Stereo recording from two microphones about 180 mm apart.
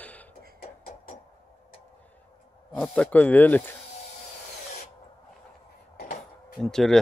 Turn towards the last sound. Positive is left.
turn(degrees=0)  # may be behind; listen again after turning